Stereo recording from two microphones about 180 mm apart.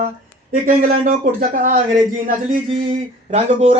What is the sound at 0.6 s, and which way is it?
Speech, 50° right (ahead or behind).